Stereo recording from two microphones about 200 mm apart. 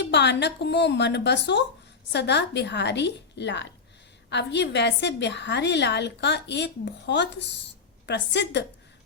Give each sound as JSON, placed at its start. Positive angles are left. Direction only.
{"t": 0.0, "sound": "a woman's voice", "side_deg": 60}